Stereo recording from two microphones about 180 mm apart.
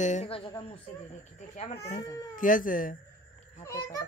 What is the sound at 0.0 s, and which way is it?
Speech, 40° left (ahead or behind).